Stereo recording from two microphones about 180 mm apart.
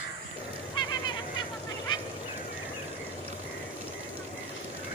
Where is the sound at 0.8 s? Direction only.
25° left (ahead or behind).